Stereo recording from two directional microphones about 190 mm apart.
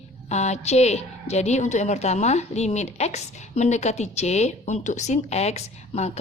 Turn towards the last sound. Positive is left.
turn(degrees=35)  # may be behind; listen again after turning